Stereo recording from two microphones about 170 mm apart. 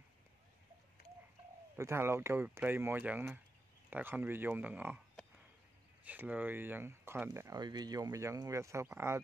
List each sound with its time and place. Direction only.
1.8 s speech: 15° right (ahead or behind)